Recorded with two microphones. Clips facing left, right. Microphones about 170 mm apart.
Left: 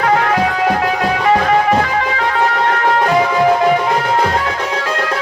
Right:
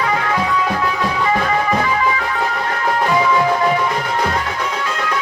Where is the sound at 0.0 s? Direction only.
60° left (ahead or behind).